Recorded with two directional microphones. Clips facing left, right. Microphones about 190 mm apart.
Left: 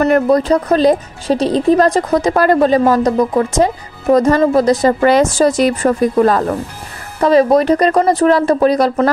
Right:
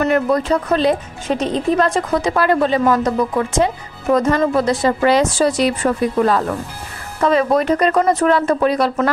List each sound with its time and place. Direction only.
0.0 s speech: 40° left (ahead or behind)